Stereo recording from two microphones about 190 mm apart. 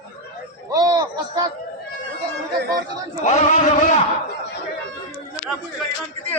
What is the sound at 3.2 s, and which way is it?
Speech, 35° left (ahead or behind).